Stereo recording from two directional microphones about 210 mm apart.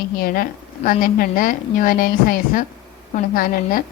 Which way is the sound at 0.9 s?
40° left (ahead or behind).